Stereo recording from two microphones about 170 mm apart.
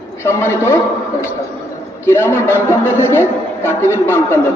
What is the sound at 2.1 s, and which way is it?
Speech, 15° left (ahead or behind).